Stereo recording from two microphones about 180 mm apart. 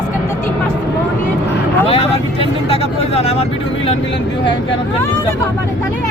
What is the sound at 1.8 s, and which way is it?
Vehicle, 30° left (ahead or behind).